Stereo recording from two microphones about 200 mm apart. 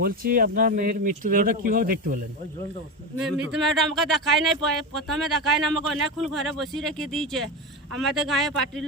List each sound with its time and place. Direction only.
0.0 s speech: 45° right (ahead or behind)
3.2 s speech: centre (ahead or behind)